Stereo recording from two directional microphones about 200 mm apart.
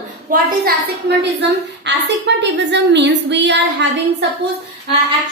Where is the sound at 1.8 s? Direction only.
60° right (ahead or behind).